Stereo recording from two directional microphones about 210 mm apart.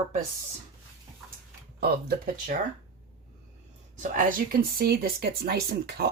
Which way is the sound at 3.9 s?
40° right (ahead or behind).